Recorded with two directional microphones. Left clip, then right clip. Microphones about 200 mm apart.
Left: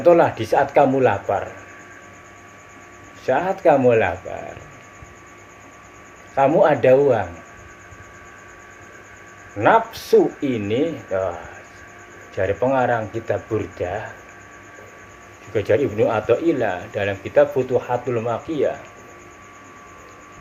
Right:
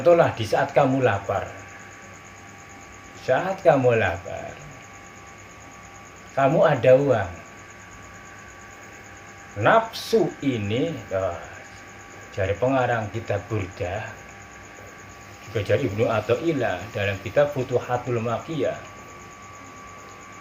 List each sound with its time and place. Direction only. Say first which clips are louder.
0.0 s speech: left 3 dB; 30° left (ahead or behind)
3.2 s speech: left 3 dB; 30° left (ahead or behind)
6.3 s speech: left 4 dB; 30° left (ahead or behind)
9.6 s speech: left 3 dB; 30° left (ahead or behind)
12.4 s speech: left 3 dB; 25° left (ahead or behind)
15.5 s speech: left 5 dB; 30° left (ahead or behind)